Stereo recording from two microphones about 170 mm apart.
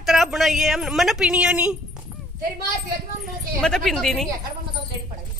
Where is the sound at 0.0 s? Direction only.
Centre (ahead or behind).